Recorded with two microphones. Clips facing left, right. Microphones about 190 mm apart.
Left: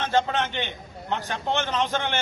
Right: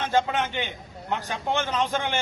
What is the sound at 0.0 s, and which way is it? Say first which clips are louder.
A man's voice: even; 10° right (ahead or behind).